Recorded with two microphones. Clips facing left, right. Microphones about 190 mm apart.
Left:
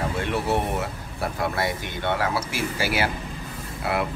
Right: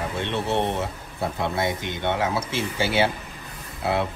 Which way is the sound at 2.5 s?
25° right (ahead or behind).